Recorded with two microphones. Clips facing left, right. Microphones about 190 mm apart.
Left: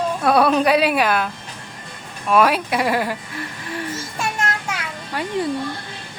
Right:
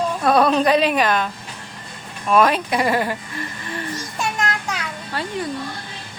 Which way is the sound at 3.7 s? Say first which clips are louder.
Left 2 dB; 5° left (ahead or behind).